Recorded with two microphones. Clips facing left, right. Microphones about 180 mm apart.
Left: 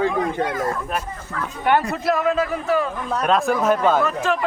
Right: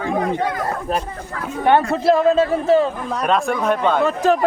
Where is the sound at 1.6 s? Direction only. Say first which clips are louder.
Right 5 dB; 25° right (ahead or behind).